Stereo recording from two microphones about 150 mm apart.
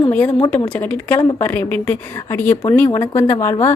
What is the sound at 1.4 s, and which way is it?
A woman's voice, 15° left (ahead or behind).